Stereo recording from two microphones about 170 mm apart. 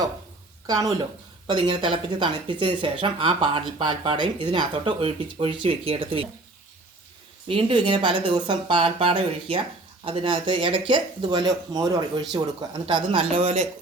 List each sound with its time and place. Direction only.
0.7 s speech: 20° right (ahead or behind)
7.4 s speech: 30° right (ahead or behind)